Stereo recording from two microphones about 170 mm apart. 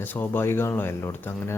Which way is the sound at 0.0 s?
10° left (ahead or behind).